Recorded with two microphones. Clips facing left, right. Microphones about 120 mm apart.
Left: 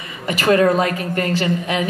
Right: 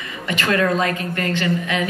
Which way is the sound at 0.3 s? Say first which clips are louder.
Left 5 dB; 35° left (ahead or behind).